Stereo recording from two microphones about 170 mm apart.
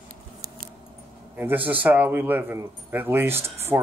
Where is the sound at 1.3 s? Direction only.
10° right (ahead or behind).